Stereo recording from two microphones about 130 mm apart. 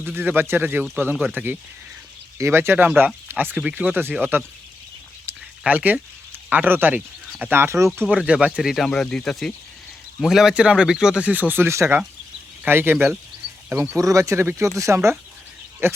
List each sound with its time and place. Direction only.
0.0 s speech: 15° right (ahead or behind)
2.4 s speech: 20° right (ahead or behind)
5.6 s speech: 10° right (ahead or behind)